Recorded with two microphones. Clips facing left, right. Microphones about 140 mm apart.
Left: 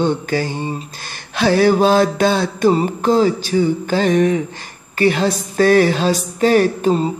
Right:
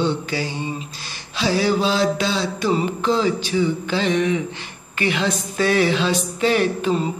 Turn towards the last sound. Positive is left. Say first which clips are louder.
# left 5 dB
turn(degrees=40)  # may be behind; listen again after turning